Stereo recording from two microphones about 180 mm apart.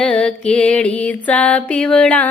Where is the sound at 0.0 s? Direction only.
5° left (ahead or behind).